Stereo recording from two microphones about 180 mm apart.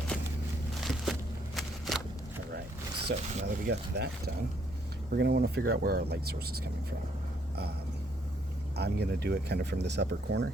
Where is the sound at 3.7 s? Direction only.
65° right (ahead or behind).